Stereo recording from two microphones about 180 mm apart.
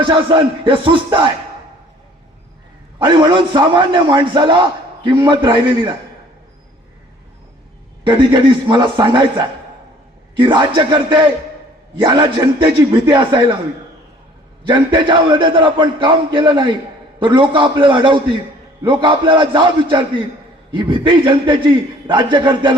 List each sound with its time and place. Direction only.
0.0 s a man's voice: 30° right (ahead or behind)
3.0 s a man's voice: 25° right (ahead or behind)
8.0 s a man's voice: 25° right (ahead or behind)
14.6 s a man's voice: 25° right (ahead or behind)